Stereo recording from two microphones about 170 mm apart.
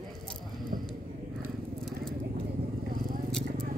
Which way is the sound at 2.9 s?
55° right (ahead or behind).